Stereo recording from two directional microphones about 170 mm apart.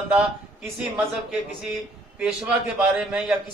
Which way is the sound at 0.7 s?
5° right (ahead or behind).